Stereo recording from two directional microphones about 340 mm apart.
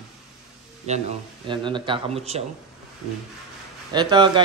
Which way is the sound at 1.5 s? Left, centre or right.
Centre.